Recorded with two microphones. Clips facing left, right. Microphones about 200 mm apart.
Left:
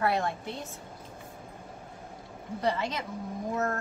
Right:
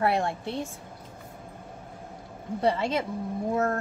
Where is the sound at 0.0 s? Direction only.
30° right (ahead or behind).